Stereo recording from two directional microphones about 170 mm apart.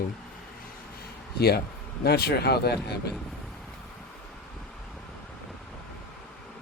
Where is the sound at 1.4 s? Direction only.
70° left (ahead or behind).